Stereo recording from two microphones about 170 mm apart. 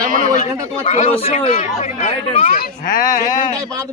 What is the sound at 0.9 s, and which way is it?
Speech, 40° left (ahead or behind).